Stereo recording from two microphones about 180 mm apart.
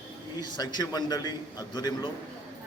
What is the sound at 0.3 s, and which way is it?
A man's voice, 25° left (ahead or behind).